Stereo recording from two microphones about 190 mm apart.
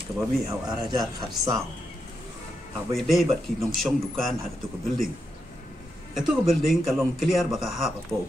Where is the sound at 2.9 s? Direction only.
Centre (ahead or behind).